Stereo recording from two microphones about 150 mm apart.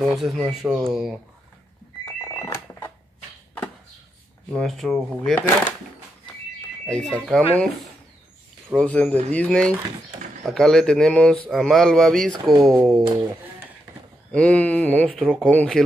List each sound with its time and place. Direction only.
0.0 s speech: centre (ahead or behind)
2.2 s alarm clock: 20° left (ahead or behind)
4.5 s speech: centre (ahead or behind)
6.9 s speech: 5° left (ahead or behind)
8.7 s speech: 10° left (ahead or behind)
14.3 s speech: 10° left (ahead or behind)